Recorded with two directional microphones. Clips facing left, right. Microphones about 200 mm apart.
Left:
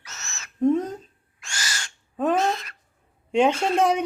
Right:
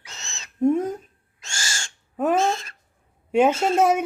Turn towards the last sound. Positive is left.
turn(degrees=-5)  # may be behind; listen again after turning